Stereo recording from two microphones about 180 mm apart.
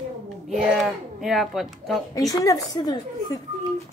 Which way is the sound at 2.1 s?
20° left (ahead or behind).